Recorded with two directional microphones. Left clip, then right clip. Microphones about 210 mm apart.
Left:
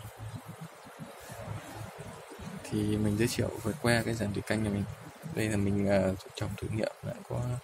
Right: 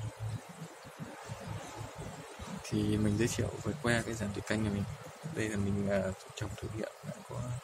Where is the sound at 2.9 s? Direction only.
15° left (ahead or behind).